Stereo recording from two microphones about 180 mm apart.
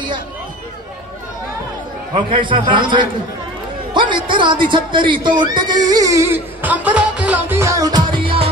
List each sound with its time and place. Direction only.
2.1 s speech: 30° right (ahead or behind)